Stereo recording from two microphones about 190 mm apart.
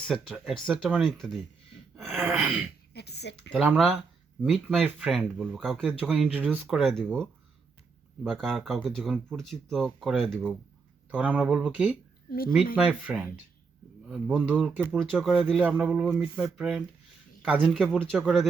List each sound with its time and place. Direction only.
0.1 s speech: centre (ahead or behind)
2.9 s speech: 60° left (ahead or behind)
3.5 s speech: centre (ahead or behind)
13.1 s speech: 10° right (ahead or behind)